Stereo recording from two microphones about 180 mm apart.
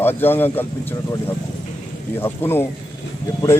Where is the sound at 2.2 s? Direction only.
10° left (ahead or behind).